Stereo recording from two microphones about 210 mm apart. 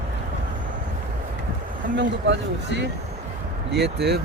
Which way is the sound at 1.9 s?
55° right (ahead or behind).